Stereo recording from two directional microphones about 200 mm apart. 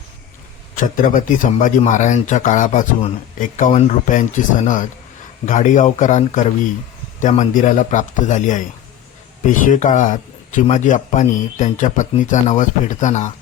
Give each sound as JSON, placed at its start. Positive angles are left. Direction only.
{"t": 0.8, "sound": "speech", "side_deg": 40}